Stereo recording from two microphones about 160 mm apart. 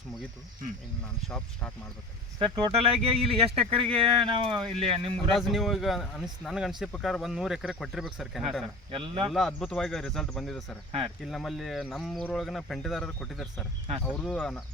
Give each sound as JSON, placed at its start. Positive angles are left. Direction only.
{"t": 1.3, "sound": "speech", "side_deg": 5}
{"t": 2.4, "sound": "speech", "side_deg": -35}
{"t": 5.4, "sound": "speech", "side_deg": 0}
{"t": 8.9, "sound": "speech", "side_deg": -35}
{"t": 9.3, "sound": "speech", "side_deg": 5}